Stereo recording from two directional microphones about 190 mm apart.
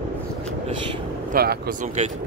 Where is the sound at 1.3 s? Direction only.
50° right (ahead or behind).